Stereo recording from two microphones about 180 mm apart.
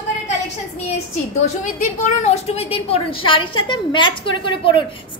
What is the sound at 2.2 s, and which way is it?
A woman's voice, 35° left (ahead or behind).